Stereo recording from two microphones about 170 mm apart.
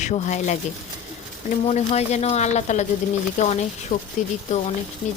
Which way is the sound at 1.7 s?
45° left (ahead or behind).